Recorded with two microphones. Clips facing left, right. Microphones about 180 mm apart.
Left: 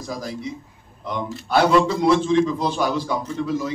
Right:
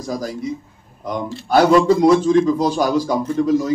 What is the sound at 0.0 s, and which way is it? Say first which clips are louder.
Speech: right 5 dB; 45° right (ahead or behind).